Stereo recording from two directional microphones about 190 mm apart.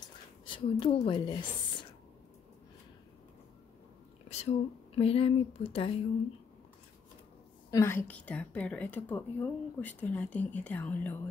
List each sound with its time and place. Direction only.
0.0 s a sound: 25° left (ahead or behind)
4.3 s a woman's voice: 35° left (ahead or behind)
7.7 s a woman's voice: 15° left (ahead or behind)